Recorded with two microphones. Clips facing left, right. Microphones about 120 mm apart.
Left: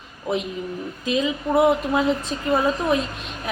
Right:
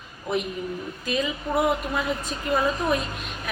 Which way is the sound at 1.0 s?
20° left (ahead or behind).